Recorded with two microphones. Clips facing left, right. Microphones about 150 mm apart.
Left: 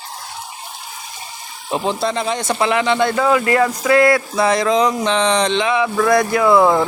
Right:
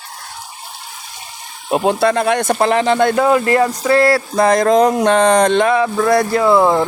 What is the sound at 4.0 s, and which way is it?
Speech, 35° right (ahead or behind).